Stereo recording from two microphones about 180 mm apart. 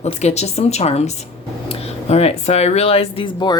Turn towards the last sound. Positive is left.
turn(degrees=25)  # may be behind; listen again after turning